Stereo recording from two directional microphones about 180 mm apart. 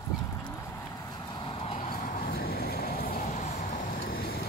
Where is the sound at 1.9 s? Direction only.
50° left (ahead or behind).